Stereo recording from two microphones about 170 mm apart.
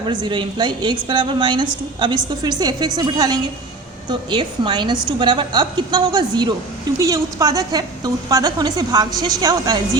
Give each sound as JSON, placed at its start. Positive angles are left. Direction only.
{"t": 0.0, "sound": "a woman's voice", "side_deg": -25}